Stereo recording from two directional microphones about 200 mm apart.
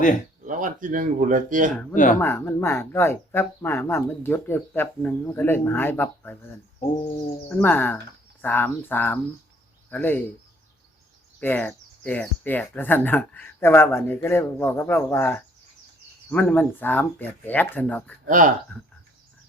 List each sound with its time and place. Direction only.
0.4 s speech: 40° right (ahead or behind)
1.7 s speech: 5° left (ahead or behind)
7.5 s speech: 10° left (ahead or behind)
11.3 s speech: 10° left (ahead or behind)
18.3 s speech: 40° right (ahead or behind)